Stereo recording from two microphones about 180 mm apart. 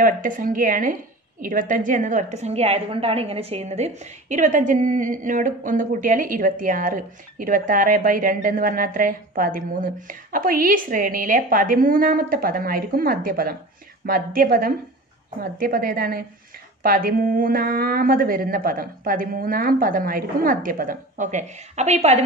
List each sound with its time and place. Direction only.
0.0 s a woman's voice: 50° right (ahead or behind)